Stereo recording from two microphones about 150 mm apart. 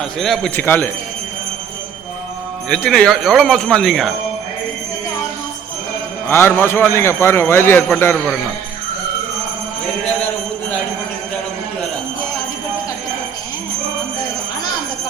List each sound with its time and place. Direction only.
0.2 s a man's voice: 5° left (ahead or behind)
2.6 s speech: 5° left (ahead or behind)
6.2 s a man's voice: 15° left (ahead or behind)